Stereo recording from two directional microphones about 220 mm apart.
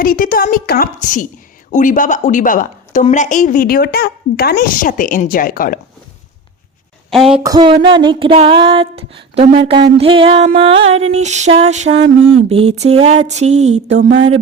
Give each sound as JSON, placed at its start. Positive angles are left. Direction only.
{"t": 0.0, "sound": "a woman's voice", "side_deg": 40}
{"t": 7.1, "sound": "speech", "side_deg": 0}
{"t": 7.4, "sound": "a sound", "side_deg": -20}